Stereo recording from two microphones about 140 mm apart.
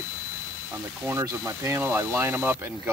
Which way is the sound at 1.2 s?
20° right (ahead or behind).